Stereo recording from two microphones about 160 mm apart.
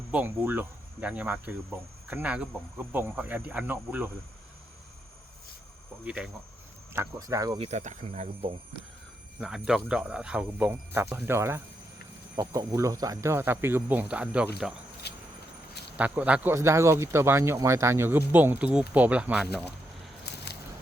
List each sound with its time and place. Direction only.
0.1 s speech: 10° right (ahead or behind)
6.1 s speech: 5° right (ahead or behind)
6.9 s speech: 20° right (ahead or behind)
7.6 s speech: 45° right (ahead or behind)
9.4 s speech: 5° right (ahead or behind)
15.1 s vehicle: 90° left
16.0 s speech: 10° right (ahead or behind)